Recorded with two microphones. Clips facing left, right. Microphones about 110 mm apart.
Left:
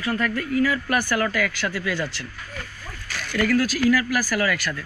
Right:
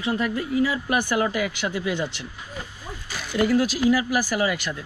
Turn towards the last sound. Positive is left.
turn(degrees=-20)  # may be behind; listen again after turning